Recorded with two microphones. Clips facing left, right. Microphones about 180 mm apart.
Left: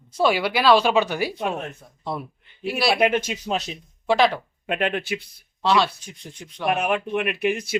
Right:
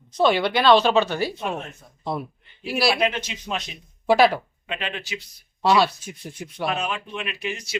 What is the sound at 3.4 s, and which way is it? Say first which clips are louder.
Speech: left 4 dB; 35° left (ahead or behind).